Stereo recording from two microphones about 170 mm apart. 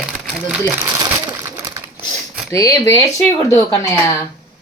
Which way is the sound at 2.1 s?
Centre (ahead or behind).